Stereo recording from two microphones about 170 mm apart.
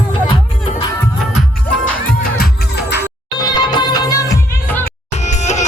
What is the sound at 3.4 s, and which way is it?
Music, 25° left (ahead or behind).